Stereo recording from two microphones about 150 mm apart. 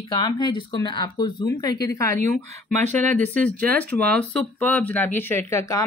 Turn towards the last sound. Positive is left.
turn(degrees=15)  # may be behind; listen again after turning